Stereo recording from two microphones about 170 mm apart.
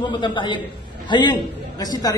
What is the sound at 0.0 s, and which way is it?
A man's voice, 25° left (ahead or behind).